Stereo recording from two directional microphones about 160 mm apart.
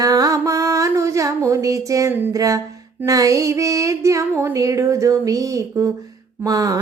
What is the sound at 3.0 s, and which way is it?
Music, 20° right (ahead or behind).